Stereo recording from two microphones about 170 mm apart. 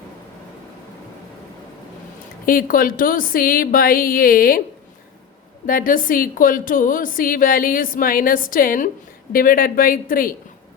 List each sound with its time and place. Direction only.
2.5 s a woman's voice: 55° left (ahead or behind)
5.6 s a woman's voice: 55° left (ahead or behind)